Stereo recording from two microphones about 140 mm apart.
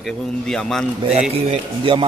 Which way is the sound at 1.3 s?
45° right (ahead or behind).